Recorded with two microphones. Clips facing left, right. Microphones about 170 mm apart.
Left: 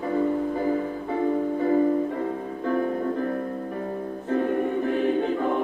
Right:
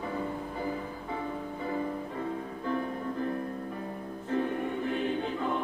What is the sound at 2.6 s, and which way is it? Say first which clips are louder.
Music: left 8 dB; 45° left (ahead or behind).